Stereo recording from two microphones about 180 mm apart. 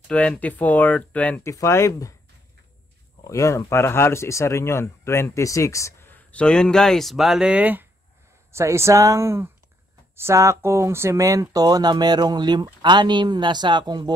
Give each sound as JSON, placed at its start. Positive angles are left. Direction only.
{"t": 0.1, "sound": "speech", "side_deg": 5}
{"t": 3.3, "sound": "speech", "side_deg": 15}